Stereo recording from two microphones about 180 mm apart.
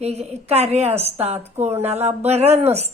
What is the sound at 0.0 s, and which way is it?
Speech, 35° right (ahead or behind).